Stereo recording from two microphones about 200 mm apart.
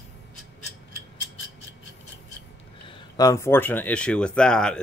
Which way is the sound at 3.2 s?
15° left (ahead or behind).